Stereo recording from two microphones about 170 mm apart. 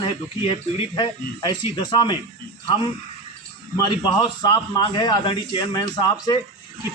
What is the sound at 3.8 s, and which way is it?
A man's voice, 25° left (ahead or behind).